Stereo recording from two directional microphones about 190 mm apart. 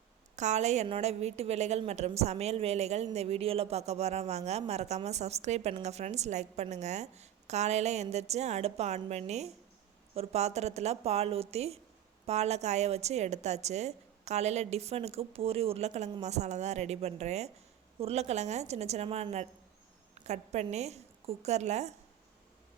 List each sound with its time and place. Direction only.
0.3 s a woman's voice: 35° right (ahead or behind)